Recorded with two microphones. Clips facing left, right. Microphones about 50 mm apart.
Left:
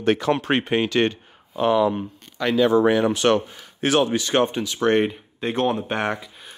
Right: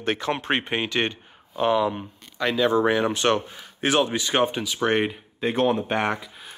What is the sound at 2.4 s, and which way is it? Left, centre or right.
Speech, right.